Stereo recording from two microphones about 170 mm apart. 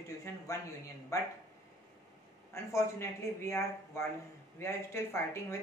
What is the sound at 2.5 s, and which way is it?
Speech, 15° left (ahead or behind).